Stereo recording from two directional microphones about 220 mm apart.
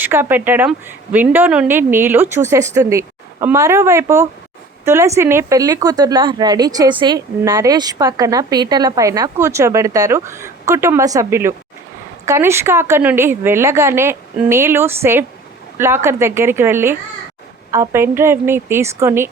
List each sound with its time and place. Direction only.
0.0 s speech: 10° right (ahead or behind)